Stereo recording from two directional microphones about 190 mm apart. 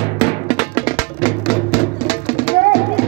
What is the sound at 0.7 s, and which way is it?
Music, 40° left (ahead or behind).